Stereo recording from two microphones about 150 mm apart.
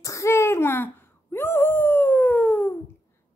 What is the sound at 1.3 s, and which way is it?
Wail, 15° left (ahead or behind).